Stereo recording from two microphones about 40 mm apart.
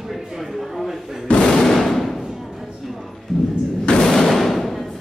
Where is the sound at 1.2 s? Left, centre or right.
Left.